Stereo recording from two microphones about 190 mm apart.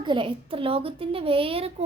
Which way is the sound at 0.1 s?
25° right (ahead or behind).